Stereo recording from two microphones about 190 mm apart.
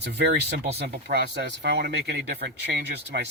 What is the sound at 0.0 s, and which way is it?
Speech, 60° right (ahead or behind).